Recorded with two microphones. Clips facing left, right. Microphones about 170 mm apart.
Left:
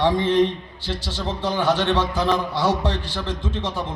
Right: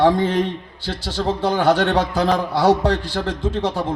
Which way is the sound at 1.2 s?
40° right (ahead or behind).